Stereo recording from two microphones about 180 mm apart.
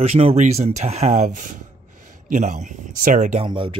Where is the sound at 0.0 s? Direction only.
35° right (ahead or behind).